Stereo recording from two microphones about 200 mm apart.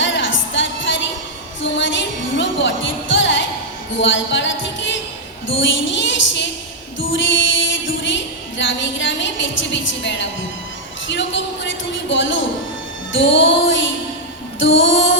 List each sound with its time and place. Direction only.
0.0 s music: 70° left (ahead or behind)
5.5 s a woman's voice: 70° left (ahead or behind)
7.0 s music: 70° left (ahead or behind)
11.1 s a woman's voice: 65° left (ahead or behind)